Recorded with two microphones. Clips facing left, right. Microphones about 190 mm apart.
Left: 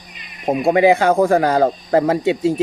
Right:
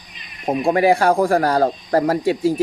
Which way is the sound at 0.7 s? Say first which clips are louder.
Left 2 dB; 20° left (ahead or behind).